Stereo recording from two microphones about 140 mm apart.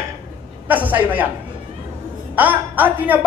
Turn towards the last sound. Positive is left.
turn(degrees=-10)  # may be behind; listen again after turning